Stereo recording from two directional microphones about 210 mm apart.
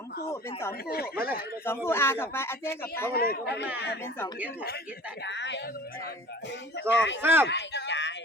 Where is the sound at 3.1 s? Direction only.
45° left (ahead or behind).